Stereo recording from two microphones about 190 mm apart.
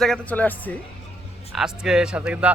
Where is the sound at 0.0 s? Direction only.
5° left (ahead or behind).